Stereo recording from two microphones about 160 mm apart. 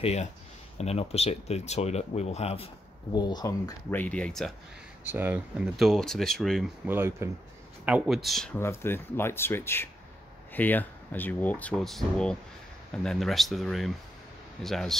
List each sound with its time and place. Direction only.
0.0 s speech: 45° left (ahead or behind); by 3.7 s 25° left (ahead or behind)
3.9 s speech: 10° left (ahead or behind)
5.0 s speech: 10° right (ahead or behind)
6.9 s speech: 15° right (ahead or behind)
7.8 s speech: 5° right (ahead or behind)
8.5 s speech: 15° left (ahead or behind)